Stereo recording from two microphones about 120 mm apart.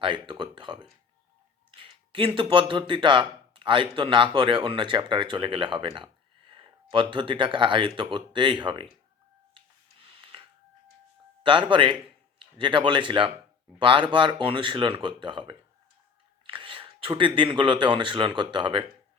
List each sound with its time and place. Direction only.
0.0 s speech: 45° right (ahead or behind)
9.6 s a sound: 45° right (ahead or behind)
11.4 s speech: 45° right (ahead or behind)